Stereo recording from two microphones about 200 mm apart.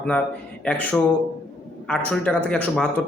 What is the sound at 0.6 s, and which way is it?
A man's voice, 5° left (ahead or behind).